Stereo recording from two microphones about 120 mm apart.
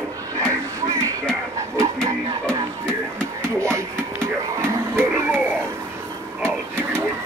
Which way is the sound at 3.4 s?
25° right (ahead or behind).